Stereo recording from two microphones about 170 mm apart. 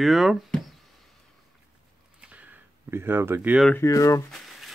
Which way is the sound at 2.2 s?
10° right (ahead or behind).